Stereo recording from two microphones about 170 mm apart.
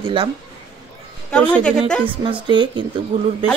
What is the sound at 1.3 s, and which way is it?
Speech, 5° left (ahead or behind).